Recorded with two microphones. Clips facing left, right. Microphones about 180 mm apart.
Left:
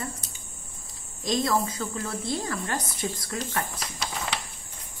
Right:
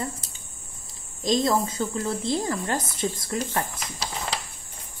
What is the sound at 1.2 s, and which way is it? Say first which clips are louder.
Speech: right 3 dB; 20° right (ahead or behind).